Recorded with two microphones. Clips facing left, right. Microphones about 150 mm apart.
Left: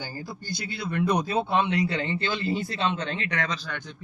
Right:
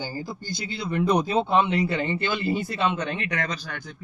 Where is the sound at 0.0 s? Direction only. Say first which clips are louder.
Right 4 dB; 15° right (ahead or behind).